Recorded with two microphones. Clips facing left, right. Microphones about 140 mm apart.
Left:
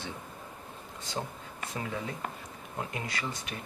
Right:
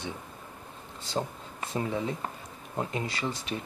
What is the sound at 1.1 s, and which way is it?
Speech, 30° right (ahead or behind).